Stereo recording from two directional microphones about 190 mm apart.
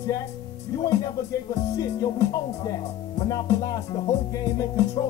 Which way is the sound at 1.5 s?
20° left (ahead or behind).